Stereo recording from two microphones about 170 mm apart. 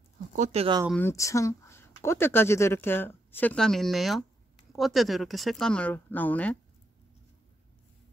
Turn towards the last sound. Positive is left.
turn(degrees=10)  # may be behind; listen again after turning